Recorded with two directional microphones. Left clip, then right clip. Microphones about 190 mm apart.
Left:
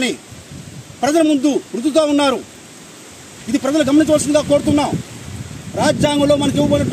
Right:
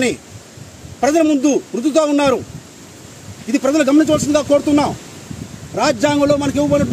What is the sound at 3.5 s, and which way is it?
A man's voice, 10° right (ahead or behind).